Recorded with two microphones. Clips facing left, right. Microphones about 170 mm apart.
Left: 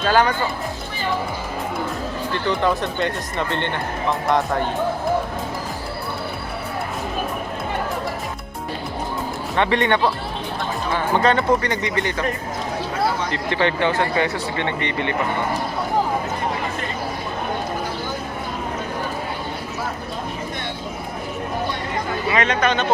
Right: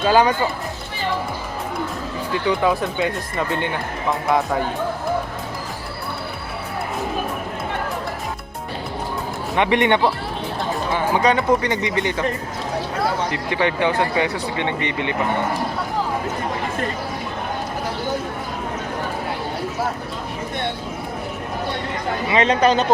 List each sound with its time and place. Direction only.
0.0 s speech: 15° right (ahead or behind)
2.3 s speech: 5° right (ahead or behind)
9.6 s speech: 20° right (ahead or behind)
13.3 s speech: 10° right (ahead or behind)
22.3 s speech: 30° right (ahead or behind)